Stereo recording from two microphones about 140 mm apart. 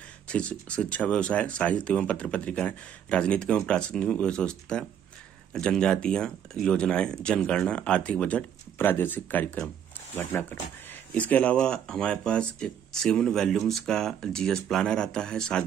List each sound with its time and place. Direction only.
0.3 s speech: 10° left (ahead or behind)
11.1 s speech: 10° left (ahead or behind)